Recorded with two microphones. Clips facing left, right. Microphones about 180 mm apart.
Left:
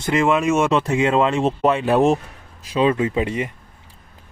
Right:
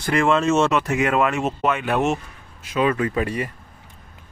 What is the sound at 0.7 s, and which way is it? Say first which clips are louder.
Speech: left 2 dB; 25° left (ahead or behind).